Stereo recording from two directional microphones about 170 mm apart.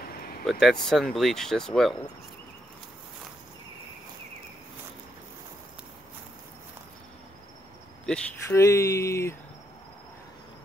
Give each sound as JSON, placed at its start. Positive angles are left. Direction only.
{"t": 0.5, "sound": "speech", "side_deg": 0}
{"t": 8.0, "sound": "speech", "side_deg": 5}
{"t": 8.5, "sound": "speech", "side_deg": 20}